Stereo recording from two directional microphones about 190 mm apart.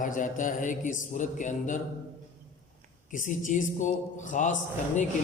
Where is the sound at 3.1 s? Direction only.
45° left (ahead or behind).